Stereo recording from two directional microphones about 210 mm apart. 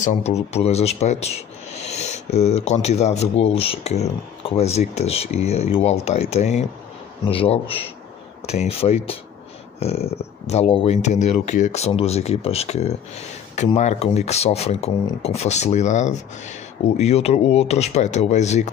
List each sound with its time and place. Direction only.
0.0 s speech: 35° left (ahead or behind)